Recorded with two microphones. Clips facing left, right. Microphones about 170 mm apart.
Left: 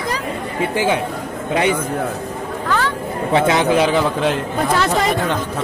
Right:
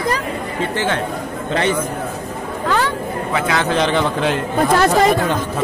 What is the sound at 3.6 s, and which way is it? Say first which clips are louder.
Speech: left 2 dB; 10° left (ahead or behind).